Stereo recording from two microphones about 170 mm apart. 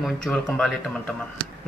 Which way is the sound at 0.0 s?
5° left (ahead or behind).